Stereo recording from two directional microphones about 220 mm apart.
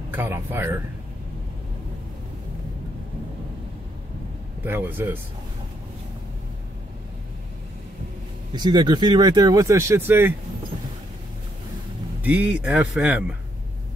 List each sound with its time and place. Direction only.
0.1 s speech: 10° right (ahead or behind)
4.6 s speech: 10° right (ahead or behind)
8.5 s speech: 20° right (ahead or behind)
12.2 s speech: 5° right (ahead or behind)